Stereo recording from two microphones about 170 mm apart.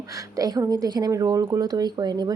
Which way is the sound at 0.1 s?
20° right (ahead or behind).